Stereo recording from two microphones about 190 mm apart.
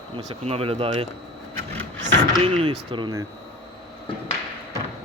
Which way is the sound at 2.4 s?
30° right (ahead or behind).